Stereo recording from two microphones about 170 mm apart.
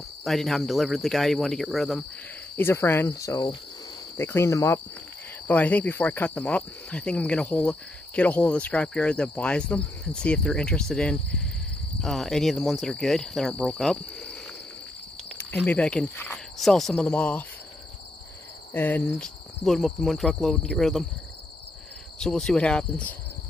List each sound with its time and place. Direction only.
0.2 s cricket: centre (ahead or behind)
2.5 s cricket: 15° left (ahead or behind)
3.1 s speech: 20° left (ahead or behind)
4.2 s cricket: 15° left (ahead or behind)
15.2 s speech: 10° left (ahead or behind)
16.5 s cricket: centre (ahead or behind)
18.7 s cricket: 10° left (ahead or behind)
22.2 s cricket: 5° left (ahead or behind)